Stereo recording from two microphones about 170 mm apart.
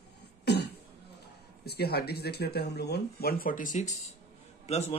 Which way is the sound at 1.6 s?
70° left (ahead or behind).